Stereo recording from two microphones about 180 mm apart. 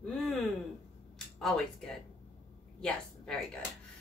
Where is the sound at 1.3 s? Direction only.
5° left (ahead or behind).